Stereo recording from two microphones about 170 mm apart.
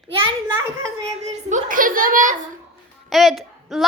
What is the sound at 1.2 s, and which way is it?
A woman's voice, 45° right (ahead or behind).